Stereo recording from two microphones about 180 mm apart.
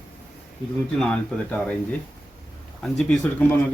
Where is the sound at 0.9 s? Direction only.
5° left (ahead or behind).